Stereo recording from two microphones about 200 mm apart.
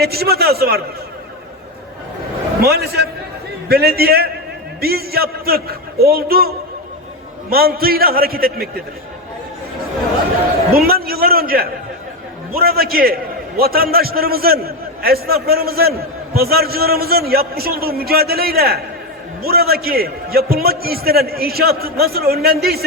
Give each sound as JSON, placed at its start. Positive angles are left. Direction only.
{"t": 0.0, "sound": "a man's voice", "side_deg": -50}
{"t": 2.6, "sound": "a man's voice", "side_deg": -50}
{"t": 7.5, "sound": "a man's voice", "side_deg": -50}
{"t": 10.8, "sound": "a man's voice", "side_deg": -50}